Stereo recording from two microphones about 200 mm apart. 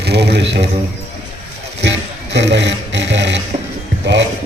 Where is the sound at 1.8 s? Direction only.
60° right (ahead or behind).